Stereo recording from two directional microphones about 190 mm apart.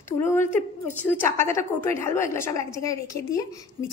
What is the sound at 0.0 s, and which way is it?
A woman's voice, 15° left (ahead or behind).